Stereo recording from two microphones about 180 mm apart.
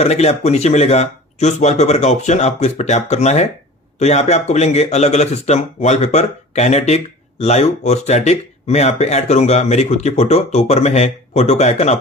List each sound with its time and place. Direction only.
0.0 s speech: 35° left (ahead or behind)